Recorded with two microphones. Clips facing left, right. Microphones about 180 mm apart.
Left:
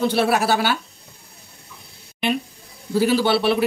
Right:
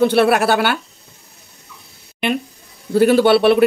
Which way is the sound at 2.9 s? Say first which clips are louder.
Right 6 dB; 60° right (ahead or behind).